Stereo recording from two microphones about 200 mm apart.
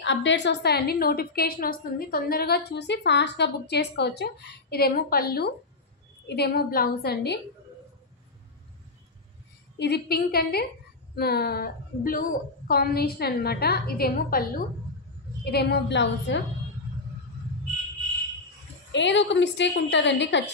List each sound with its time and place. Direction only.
0.0 s a woman's voice: 65° left (ahead or behind)
9.8 s a woman's voice: 55° left (ahead or behind)
18.9 s a woman's voice: 65° left (ahead or behind)